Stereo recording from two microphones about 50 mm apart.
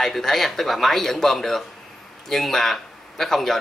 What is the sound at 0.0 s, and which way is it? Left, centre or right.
Speech, centre.